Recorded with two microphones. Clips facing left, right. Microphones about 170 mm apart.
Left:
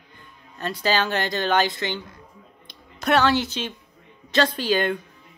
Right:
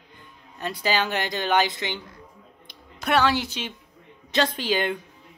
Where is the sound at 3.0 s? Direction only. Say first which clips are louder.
Left 2 dB; 5° right (ahead or behind).